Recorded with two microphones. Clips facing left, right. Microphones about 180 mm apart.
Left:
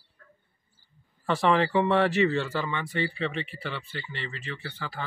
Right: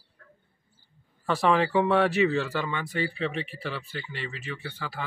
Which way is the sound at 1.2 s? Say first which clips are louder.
Even; 5° right (ahead or behind).